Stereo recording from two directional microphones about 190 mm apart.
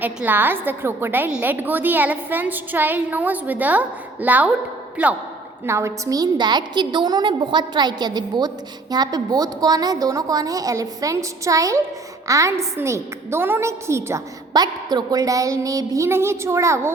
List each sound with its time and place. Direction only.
0.0 s a woman's voice: 10° right (ahead or behind)